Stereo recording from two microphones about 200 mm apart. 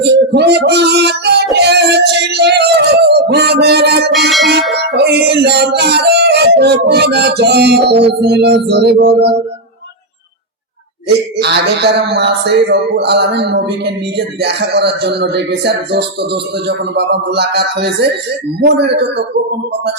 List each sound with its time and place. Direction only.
0.3 s child singing: 55° right (ahead or behind)
1.5 s a sound: 55° right (ahead or behind)
4.3 s bell: centre (ahead or behind)
4.9 s yodeling: 55° right (ahead or behind)
11.3 s speech: 55° right (ahead or behind)